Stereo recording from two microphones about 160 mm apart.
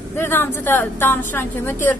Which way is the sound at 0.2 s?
15° left (ahead or behind).